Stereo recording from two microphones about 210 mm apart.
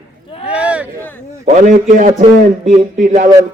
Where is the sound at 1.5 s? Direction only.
35° right (ahead or behind).